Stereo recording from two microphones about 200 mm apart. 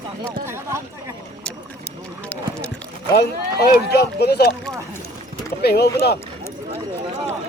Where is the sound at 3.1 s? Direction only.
55° left (ahead or behind).